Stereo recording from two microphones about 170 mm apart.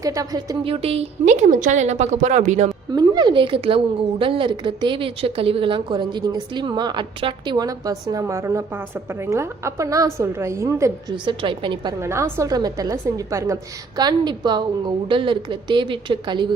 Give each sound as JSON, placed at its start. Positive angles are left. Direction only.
{"t": 0.0, "sound": "a woman's voice", "side_deg": -20}
{"t": 0.6, "sound": "a woman's voice", "side_deg": -35}
{"t": 2.9, "sound": "a woman's voice", "side_deg": -25}
{"t": 11.3, "sound": "a woman's voice", "side_deg": -30}
{"t": 11.9, "sound": "a woman's voice", "side_deg": -15}